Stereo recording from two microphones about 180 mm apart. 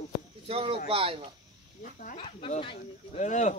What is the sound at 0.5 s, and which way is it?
Speech, 30° right (ahead or behind).